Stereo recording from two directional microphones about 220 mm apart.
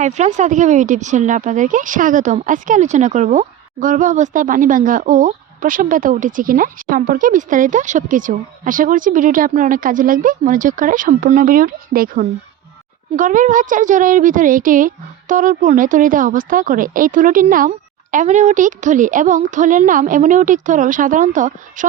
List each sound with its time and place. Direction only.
0.0 s speech: 30° right (ahead or behind)